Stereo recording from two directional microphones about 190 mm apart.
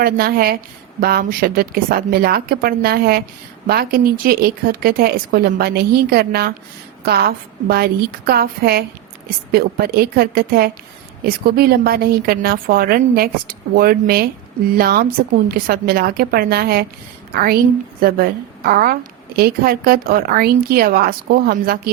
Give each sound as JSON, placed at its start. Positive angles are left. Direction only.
{"t": 0.0, "sound": "a woman's voice", "side_deg": -50}